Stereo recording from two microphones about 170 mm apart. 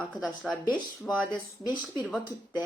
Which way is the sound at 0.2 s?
Centre (ahead or behind).